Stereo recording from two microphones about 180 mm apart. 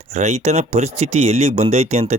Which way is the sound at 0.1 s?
40° right (ahead or behind).